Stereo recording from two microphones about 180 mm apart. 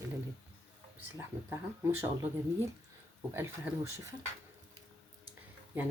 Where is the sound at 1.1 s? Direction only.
15° right (ahead or behind).